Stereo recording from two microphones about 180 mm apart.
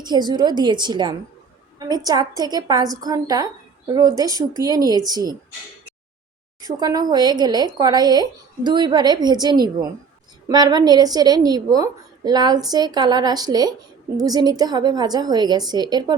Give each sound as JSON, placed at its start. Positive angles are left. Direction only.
{"t": 0.0, "sound": "a woman's voice", "side_deg": -25}
{"t": 6.7, "sound": "a woman's voice", "side_deg": -20}